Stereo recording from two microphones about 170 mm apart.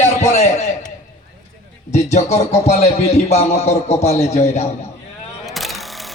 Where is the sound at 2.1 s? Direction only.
40° left (ahead or behind).